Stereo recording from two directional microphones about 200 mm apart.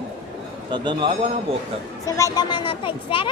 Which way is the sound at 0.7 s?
25° right (ahead or behind).